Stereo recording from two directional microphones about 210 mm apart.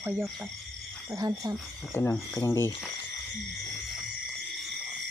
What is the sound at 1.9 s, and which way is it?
Speech, 15° left (ahead or behind).